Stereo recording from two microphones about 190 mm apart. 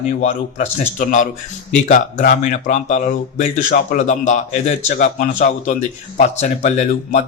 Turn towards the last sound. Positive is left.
turn(degrees=40)  # may be behind; listen again after turning